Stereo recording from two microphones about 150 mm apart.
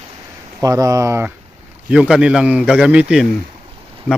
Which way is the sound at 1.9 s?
5° right (ahead or behind).